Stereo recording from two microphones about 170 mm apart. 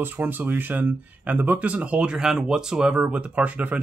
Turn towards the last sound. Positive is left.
turn(degrees=-10)  # may be behind; listen again after turning